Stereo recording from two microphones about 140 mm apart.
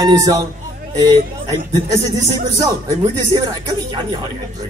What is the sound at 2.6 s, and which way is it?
A man's voice, 25° right (ahead or behind).